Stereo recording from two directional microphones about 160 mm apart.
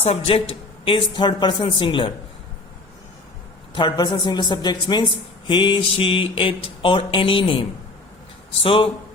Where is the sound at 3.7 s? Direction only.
30° left (ahead or behind).